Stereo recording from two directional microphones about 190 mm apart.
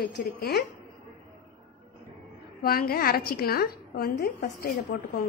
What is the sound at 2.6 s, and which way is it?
A woman's voice, 50° left (ahead or behind).